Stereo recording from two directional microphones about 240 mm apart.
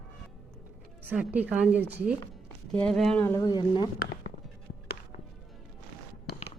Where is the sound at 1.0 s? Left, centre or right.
Centre.